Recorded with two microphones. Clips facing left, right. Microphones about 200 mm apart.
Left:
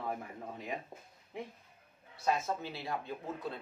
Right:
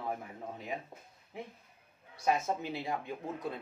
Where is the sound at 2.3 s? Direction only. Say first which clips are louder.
Right 2 dB; 20° right (ahead or behind).